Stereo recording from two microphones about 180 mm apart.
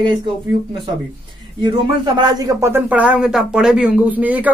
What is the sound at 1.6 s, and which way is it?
A man's voice, 25° right (ahead or behind).